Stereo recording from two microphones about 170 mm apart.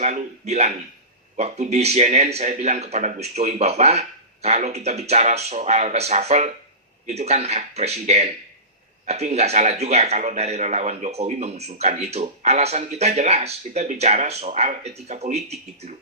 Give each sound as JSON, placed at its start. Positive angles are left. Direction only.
{"t": 0.0, "sound": "a man's voice", "side_deg": -40}